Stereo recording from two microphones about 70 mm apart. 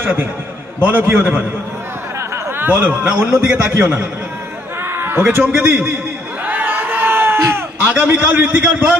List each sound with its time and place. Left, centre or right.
0.0 s a man's voice: right
2.1 s a sound: right
2.7 s a man's voice: right
4.8 s a sound: right
5.3 s a man's voice: right
6.4 s crowd: right
7.8 s a man's voice: right